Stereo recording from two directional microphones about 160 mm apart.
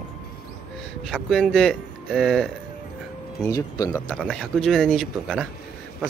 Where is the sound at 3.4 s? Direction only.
20° left (ahead or behind).